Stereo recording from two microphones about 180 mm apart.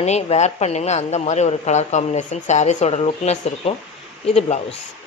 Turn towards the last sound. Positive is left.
turn(degrees=35)  # may be behind; listen again after turning